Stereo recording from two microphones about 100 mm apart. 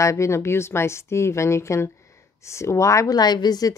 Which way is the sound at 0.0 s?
30° left (ahead or behind).